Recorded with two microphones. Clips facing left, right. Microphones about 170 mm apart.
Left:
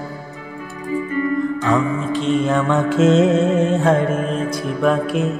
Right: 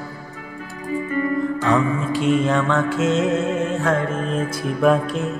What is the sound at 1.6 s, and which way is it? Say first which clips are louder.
Music: left 1 dB; 5° right (ahead or behind).